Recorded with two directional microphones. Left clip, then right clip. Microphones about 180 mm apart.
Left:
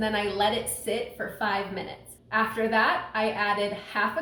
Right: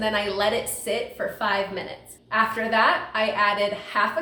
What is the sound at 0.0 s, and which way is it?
A woman's voice, 20° right (ahead or behind).